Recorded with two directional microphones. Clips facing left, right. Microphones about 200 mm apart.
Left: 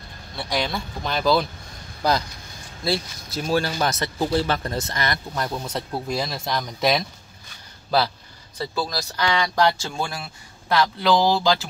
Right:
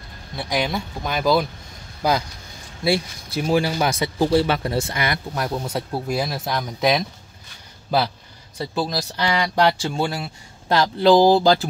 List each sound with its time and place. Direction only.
0.4 s speech: 10° right (ahead or behind)
2.8 s speech: 10° right (ahead or behind)
8.5 s speech: 20° right (ahead or behind)
11.1 s speech: 45° right (ahead or behind)